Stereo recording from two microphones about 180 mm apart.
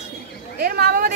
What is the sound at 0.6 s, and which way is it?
Speech, 60° right (ahead or behind).